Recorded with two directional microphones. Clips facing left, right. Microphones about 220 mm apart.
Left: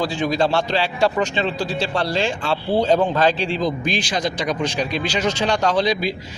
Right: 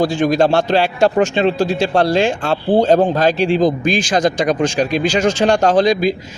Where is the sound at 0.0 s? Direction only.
45° right (ahead or behind).